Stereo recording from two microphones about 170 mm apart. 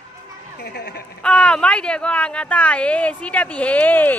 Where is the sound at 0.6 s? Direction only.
70° left (ahead or behind).